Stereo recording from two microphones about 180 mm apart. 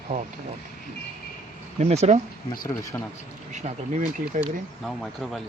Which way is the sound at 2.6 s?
20° left (ahead or behind).